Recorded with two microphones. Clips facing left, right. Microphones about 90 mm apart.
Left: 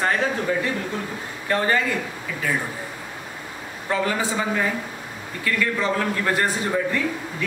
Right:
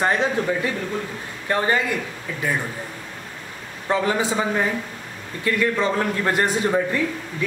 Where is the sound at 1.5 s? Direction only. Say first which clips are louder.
Even; 20° right (ahead or behind).